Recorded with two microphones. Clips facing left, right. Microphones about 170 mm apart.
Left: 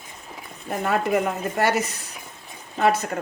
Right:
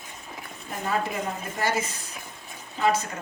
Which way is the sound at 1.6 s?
70° left (ahead or behind).